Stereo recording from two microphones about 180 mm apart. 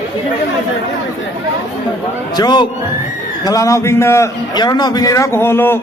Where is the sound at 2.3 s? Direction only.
25° left (ahead or behind).